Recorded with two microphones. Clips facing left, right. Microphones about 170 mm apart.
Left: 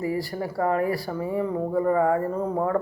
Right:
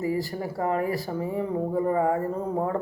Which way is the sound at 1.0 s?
20° right (ahead or behind).